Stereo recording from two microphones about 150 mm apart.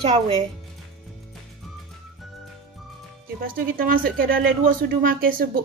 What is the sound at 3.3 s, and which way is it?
Speech, 75° right (ahead or behind).